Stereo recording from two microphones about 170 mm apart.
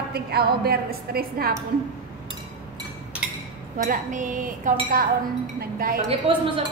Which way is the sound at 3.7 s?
50° right (ahead or behind).